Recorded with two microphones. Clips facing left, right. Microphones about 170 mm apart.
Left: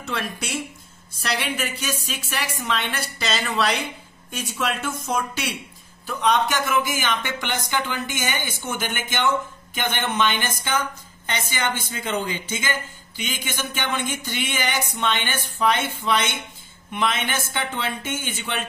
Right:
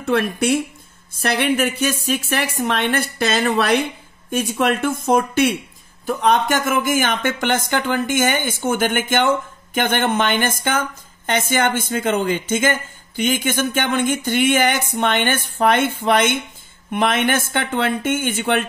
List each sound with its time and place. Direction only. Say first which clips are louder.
0.0 s a woman's voice: right 11 dB; 55° right (ahead or behind)